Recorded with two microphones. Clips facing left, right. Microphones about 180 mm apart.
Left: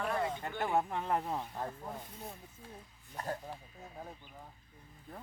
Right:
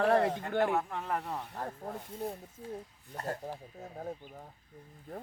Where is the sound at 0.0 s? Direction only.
75° right (ahead or behind).